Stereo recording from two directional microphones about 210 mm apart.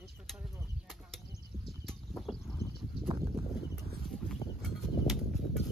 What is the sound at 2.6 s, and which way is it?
Horse, 15° left (ahead or behind).